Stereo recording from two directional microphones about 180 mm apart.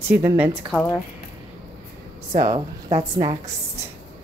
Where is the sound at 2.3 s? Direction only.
40° right (ahead or behind).